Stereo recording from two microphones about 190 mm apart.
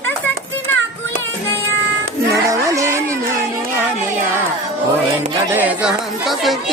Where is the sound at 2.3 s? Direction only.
15° right (ahead or behind).